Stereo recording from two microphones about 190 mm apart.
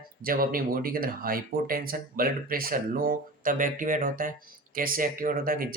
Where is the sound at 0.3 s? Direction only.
50° right (ahead or behind).